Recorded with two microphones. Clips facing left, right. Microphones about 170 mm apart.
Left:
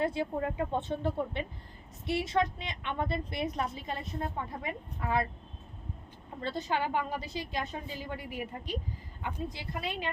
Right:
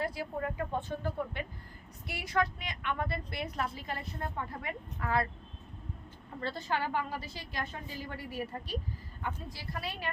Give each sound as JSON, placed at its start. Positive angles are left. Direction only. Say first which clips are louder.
{"t": 0.0, "sound": "a woman's voice", "louder": "left 4 dB", "side_deg": 25}
{"t": 6.4, "sound": "a woman's voice", "louder": "left 2 dB", "side_deg": 20}